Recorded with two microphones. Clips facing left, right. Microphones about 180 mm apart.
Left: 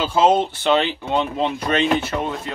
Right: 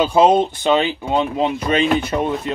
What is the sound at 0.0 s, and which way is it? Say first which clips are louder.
Speech: right 3 dB; 15° right (ahead or behind).